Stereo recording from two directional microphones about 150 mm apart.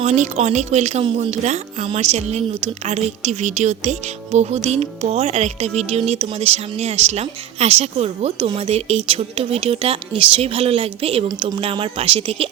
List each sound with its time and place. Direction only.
0.0 s a woman's voice: 50° right (ahead or behind)
11.3 s speech: 30° right (ahead or behind)
11.6 s speech: 40° right (ahead or behind)